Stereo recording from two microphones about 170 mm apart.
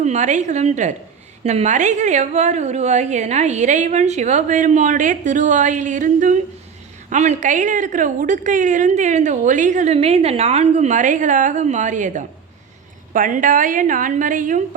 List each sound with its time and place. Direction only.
0.0 s a woman's voice: 45° right (ahead or behind)